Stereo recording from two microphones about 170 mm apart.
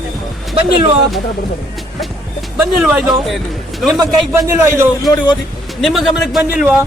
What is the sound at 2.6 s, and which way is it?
Speech, 10° right (ahead or behind).